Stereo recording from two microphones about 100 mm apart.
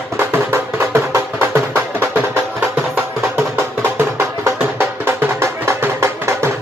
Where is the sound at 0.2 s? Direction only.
25° right (ahead or behind).